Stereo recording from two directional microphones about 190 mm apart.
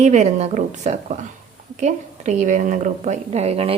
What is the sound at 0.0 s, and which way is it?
A woman's voice, 40° right (ahead or behind).